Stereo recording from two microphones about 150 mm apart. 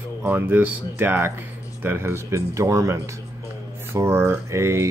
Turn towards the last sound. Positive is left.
turn(degrees=-20)  # may be behind; listen again after turning